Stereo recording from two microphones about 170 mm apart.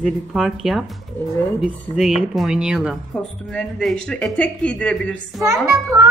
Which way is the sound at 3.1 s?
5° left (ahead or behind).